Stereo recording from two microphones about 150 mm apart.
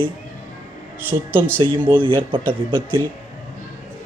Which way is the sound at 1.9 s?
35° right (ahead or behind).